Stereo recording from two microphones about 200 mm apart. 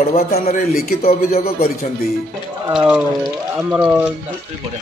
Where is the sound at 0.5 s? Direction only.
45° left (ahead or behind).